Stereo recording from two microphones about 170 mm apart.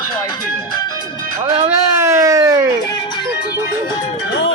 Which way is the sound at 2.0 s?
15° right (ahead or behind).